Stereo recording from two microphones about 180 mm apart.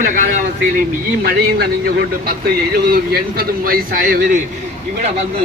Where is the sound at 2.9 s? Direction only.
55° right (ahead or behind).